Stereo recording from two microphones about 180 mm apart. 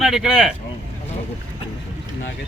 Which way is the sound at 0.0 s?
Centre (ahead or behind).